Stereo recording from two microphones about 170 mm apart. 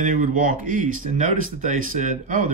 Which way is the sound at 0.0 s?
55° right (ahead or behind).